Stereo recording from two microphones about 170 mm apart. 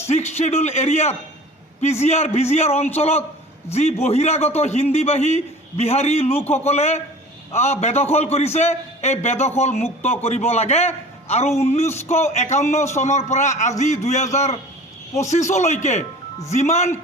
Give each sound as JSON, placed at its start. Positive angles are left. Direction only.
{"t": 0.1, "sound": "a man's voice", "side_deg": 40}